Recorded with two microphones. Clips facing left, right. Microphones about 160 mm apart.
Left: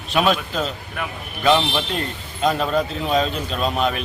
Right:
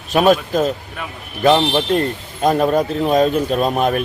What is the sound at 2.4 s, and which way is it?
Speech, 50° right (ahead or behind).